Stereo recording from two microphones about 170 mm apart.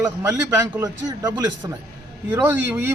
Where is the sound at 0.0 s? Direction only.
20° right (ahead or behind).